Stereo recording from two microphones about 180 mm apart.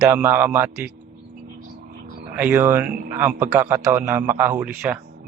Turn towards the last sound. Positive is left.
turn(degrees=-10)  # may be behind; listen again after turning